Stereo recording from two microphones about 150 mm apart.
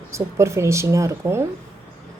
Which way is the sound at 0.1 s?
20° right (ahead or behind).